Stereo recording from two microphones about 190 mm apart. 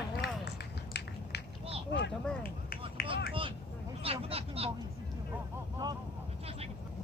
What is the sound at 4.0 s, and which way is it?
Speech, 30° right (ahead or behind).